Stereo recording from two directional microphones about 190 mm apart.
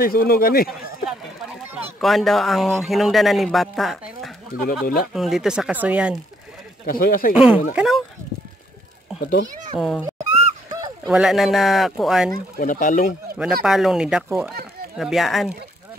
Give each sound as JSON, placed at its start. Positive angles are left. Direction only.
{"t": 0.0, "sound": "speech", "side_deg": 50}
{"t": 0.7, "sound": "a sound", "side_deg": 0}
{"t": 2.0, "sound": "speech", "side_deg": 0}
{"t": 4.5, "sound": "speech", "side_deg": 50}
{"t": 5.1, "sound": "speech", "side_deg": 0}
{"t": 6.9, "sound": "speech", "side_deg": 50}
{"t": 7.3, "sound": "speech", "side_deg": -5}
{"t": 9.2, "sound": "a child's voice", "side_deg": 65}
{"t": 9.8, "sound": "speech", "side_deg": 0}
{"t": 11.1, "sound": "speech", "side_deg": 0}
{"t": 12.5, "sound": "speech", "side_deg": 45}
{"t": 13.4, "sound": "speech", "side_deg": 0}